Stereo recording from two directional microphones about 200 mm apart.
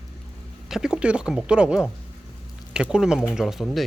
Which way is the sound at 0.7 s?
Centre (ahead or behind).